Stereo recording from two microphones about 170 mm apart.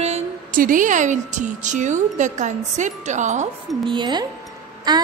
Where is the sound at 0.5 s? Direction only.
50° right (ahead or behind).